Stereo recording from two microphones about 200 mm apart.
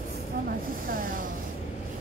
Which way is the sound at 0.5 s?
45° right (ahead or behind).